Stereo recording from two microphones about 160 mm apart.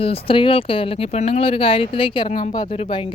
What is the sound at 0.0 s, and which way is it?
Speech, 35° left (ahead or behind).